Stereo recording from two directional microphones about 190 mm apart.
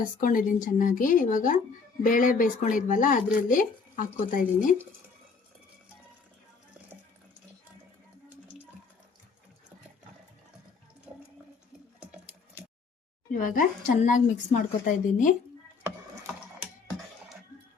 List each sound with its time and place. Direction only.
0.2 s speech: 45° left (ahead or behind)
11.9 s sewing machine: 5° right (ahead or behind)
13.3 s speech: 45° left (ahead or behind)